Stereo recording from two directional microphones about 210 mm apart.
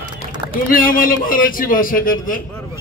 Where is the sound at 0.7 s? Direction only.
40° left (ahead or behind).